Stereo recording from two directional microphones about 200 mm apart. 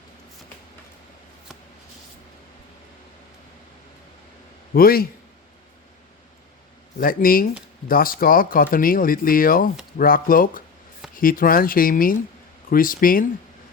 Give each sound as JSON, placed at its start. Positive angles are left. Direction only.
{"t": 4.7, "sound": "speech", "side_deg": 50}
{"t": 7.0, "sound": "speech", "side_deg": 45}